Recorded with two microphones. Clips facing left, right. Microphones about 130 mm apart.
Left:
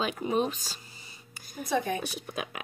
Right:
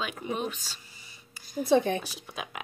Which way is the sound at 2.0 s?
55° left (ahead or behind).